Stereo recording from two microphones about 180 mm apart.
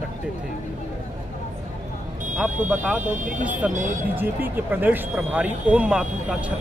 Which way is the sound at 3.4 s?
10° right (ahead or behind).